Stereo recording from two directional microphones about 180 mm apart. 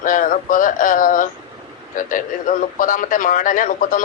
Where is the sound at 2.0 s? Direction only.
50° left (ahead or behind).